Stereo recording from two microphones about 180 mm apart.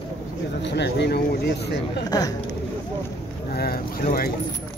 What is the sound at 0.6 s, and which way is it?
Speech, 70° left (ahead or behind).